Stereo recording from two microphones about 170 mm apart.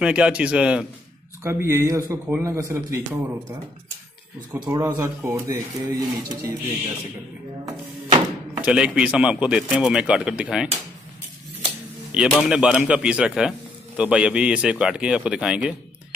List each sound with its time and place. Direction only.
0.0 s speech: 5° right (ahead or behind)
4.6 s speech: 15° right (ahead or behind)
7.6 s a sound: 20° right (ahead or behind)
8.6 s speech: 5° right (ahead or behind)
12.1 s a man's voice: 5° right (ahead or behind)